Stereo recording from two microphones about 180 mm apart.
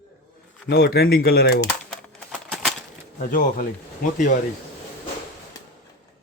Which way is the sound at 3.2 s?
50° left (ahead or behind).